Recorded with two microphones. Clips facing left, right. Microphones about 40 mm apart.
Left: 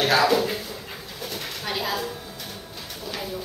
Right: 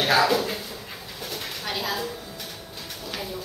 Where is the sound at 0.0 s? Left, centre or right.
Centre.